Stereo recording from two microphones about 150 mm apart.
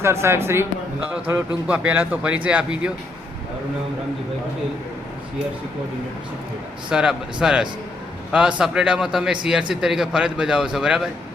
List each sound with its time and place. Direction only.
0.0 s speech: 15° right (ahead or behind)
6.9 s a man's voice: 5° right (ahead or behind)